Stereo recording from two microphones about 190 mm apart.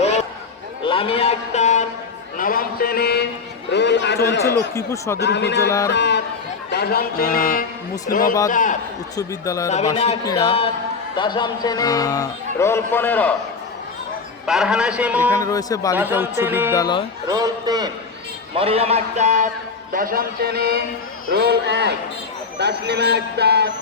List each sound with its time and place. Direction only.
0.9 s a man's voice: 30° left (ahead or behind)
2.4 s a man's voice: 50° left (ahead or behind)
4.7 s speech: 15° left (ahead or behind)
5.2 s a man's voice: 65° left (ahead or behind)
5.9 s chatter: 65° left (ahead or behind)
6.7 s a man's voice: 60° left (ahead or behind); by 8.8 s 45° left (ahead or behind)
9.1 s speech: 15° left (ahead or behind)
10.2 s speech: 30° left (ahead or behind); by 13.3 s 10° left (ahead or behind)
14.4 s a man's voice: centre (ahead or behind)
15.3 s speech: 15° left (ahead or behind)
16.0 s music: 10° right (ahead or behind)
16.7 s speech: 20° left (ahead or behind)
17.2 s a man's voice: 20° right (ahead or behind)
18.5 s a man's voice: 30° right (ahead or behind); by 23.7 s 60° right (ahead or behind)